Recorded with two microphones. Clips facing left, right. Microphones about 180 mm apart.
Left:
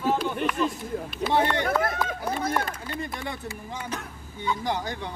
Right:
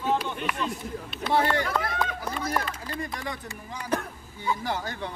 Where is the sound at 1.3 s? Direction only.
20° left (ahead or behind).